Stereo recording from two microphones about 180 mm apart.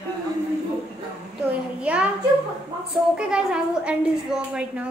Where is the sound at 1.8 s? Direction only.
5° right (ahead or behind).